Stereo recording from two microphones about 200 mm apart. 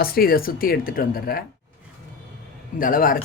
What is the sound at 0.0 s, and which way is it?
Speech, 50° left (ahead or behind).